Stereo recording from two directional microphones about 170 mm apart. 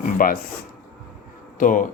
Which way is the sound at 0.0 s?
55° left (ahead or behind).